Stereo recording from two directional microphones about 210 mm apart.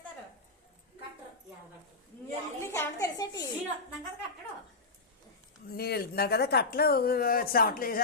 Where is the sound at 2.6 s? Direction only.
10° left (ahead or behind).